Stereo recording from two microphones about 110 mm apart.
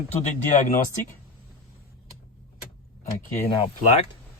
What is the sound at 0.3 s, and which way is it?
Speech, 90° left.